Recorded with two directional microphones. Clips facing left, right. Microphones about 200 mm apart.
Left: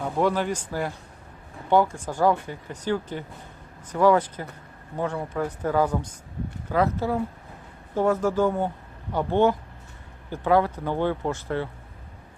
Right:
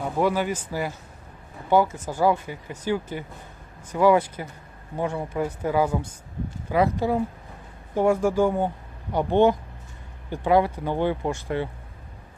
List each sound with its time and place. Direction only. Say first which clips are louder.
0.0 s speech: even; 5° right (ahead or behind)